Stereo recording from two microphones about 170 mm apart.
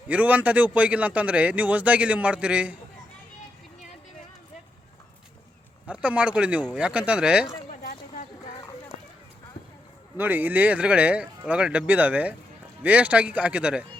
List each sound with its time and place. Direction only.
0.1 s a man's voice: 10° right (ahead or behind)
5.9 s a man's voice: 10° right (ahead or behind)
7.8 s a sound: 55° left (ahead or behind)
10.2 s a man's voice: 10° right (ahead or behind)